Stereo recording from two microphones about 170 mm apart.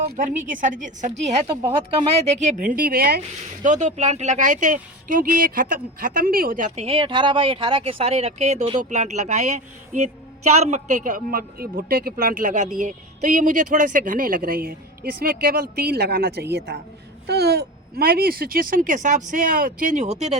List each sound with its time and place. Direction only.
0.0 s speech: 50° right (ahead or behind)
1.5 s speech: 30° right (ahead or behind)
2.2 s speech: 45° right (ahead or behind); by 3.2 s 60° right (ahead or behind)
3.6 s a woman's voice: 45° right (ahead or behind)